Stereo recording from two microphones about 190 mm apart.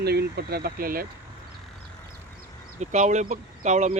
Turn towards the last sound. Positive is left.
turn(degrees=-40)  # may be behind; listen again after turning